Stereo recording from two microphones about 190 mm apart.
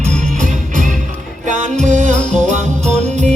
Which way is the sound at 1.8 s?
40° right (ahead or behind).